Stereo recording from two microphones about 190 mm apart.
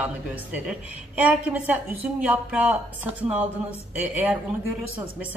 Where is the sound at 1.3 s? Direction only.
10° right (ahead or behind).